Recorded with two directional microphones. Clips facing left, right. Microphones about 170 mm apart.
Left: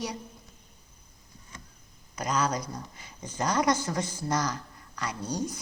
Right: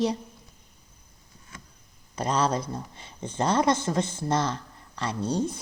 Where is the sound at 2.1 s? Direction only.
30° right (ahead or behind).